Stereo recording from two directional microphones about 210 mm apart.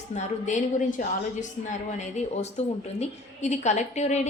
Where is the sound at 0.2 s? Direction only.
35° left (ahead or behind).